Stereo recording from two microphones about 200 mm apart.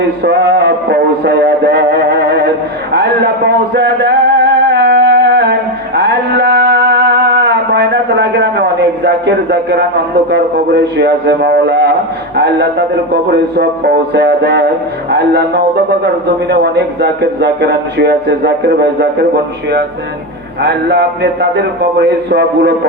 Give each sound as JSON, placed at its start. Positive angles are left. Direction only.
{"t": 0.3, "sound": "music", "side_deg": -55}
{"t": 2.9, "sound": "a man's voice", "side_deg": -55}
{"t": 4.7, "sound": "a sound", "side_deg": -55}
{"t": 6.0, "sound": "mantra", "side_deg": -55}
{"t": 10.3, "sound": "a man's voice", "side_deg": -55}
{"t": 13.3, "sound": "a man's voice", "side_deg": -55}
{"t": 20.6, "sound": "a man's voice", "side_deg": -55}